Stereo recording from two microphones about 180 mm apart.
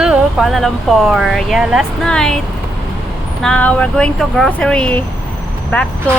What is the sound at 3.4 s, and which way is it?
Speech, 5° left (ahead or behind).